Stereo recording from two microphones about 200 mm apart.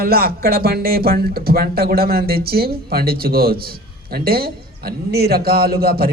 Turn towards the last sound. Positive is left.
turn(degrees=-50)  # may be behind; listen again after turning